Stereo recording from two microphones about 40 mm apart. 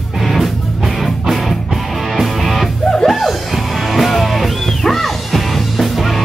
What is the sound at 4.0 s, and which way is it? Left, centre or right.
Music, centre.